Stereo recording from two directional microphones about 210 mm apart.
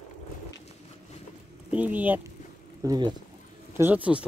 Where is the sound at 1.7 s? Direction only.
5° right (ahead or behind).